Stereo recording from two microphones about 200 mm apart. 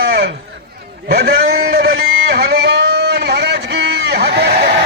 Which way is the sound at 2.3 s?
55° right (ahead or behind).